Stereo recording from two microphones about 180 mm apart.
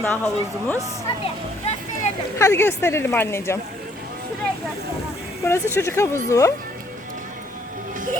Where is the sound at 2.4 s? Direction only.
15° left (ahead or behind).